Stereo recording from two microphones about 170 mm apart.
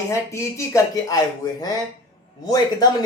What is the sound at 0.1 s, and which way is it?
Speech, 15° left (ahead or behind).